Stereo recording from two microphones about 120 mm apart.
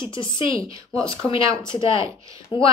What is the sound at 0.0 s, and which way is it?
Speech, 40° left (ahead or behind).